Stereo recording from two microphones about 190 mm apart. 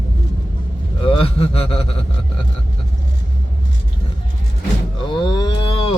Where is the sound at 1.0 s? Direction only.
30° left (ahead or behind).